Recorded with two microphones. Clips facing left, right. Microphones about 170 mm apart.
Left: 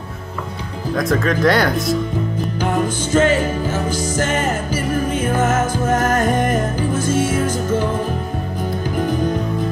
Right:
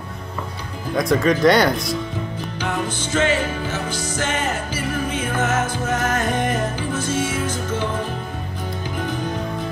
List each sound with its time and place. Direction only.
0.9 s speech: centre (ahead or behind)
2.6 s music: 45° left (ahead or behind)